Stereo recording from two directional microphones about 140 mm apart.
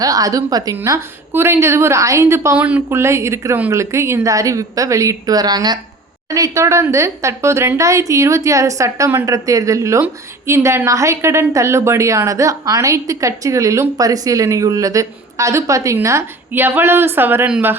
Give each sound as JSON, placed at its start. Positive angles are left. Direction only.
{"t": 0.0, "sound": "speech", "side_deg": -25}